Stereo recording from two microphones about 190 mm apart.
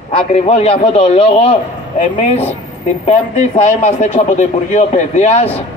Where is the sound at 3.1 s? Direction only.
35° left (ahead or behind).